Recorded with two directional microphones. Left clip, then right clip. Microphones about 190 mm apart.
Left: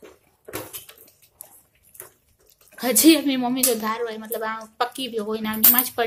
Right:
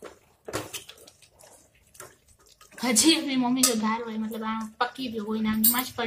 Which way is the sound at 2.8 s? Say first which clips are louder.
Left 5 dB; 35° left (ahead or behind).